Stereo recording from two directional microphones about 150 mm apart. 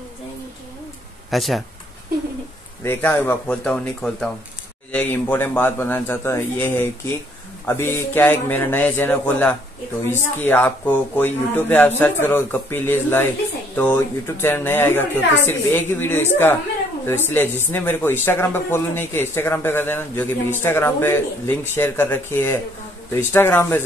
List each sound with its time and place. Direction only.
1.3 s speech: centre (ahead or behind)
2.8 s speech: 15° left (ahead or behind)